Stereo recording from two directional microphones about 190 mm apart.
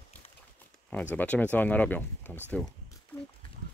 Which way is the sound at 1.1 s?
5° left (ahead or behind).